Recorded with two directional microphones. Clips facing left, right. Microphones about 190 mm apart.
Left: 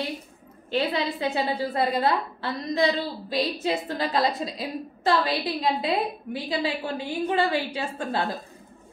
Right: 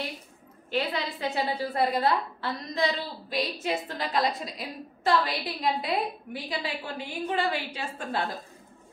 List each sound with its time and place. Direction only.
0.7 s a woman's voice: 30° left (ahead or behind)